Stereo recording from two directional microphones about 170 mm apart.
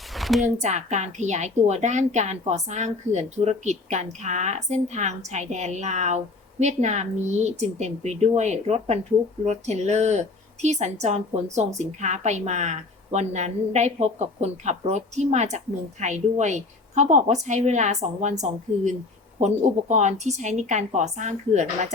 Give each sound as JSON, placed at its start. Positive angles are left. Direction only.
{"t": 0.1, "sound": "a sound", "side_deg": 0}
{"t": 0.4, "sound": "a woman's voice", "side_deg": -40}
{"t": 19.4, "sound": "a woman's voice", "side_deg": -45}